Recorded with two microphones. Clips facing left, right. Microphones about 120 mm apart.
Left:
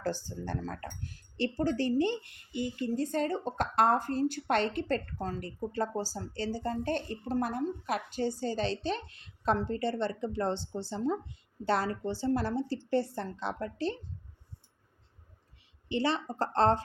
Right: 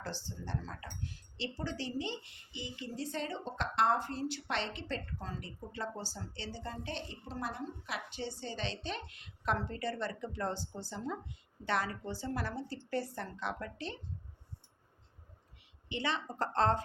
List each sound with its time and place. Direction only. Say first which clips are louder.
0.0 s a woman's voice: left 8 dB; 45° left (ahead or behind)
15.9 s a woman's voice: left 6 dB; 35° left (ahead or behind)